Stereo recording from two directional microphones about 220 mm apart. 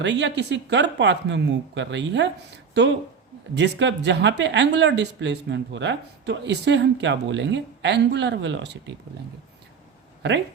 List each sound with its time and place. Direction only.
0.0 s speech: 55° right (ahead or behind)